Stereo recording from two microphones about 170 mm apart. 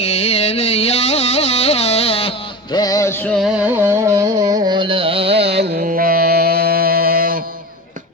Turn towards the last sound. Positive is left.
turn(degrees=-55)  # may be behind; listen again after turning